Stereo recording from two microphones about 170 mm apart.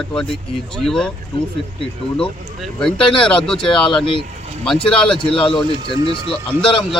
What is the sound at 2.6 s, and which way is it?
Speech, 5° left (ahead or behind).